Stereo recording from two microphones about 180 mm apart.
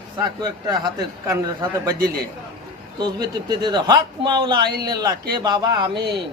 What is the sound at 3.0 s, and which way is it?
A man's voice, 25° right (ahead or behind).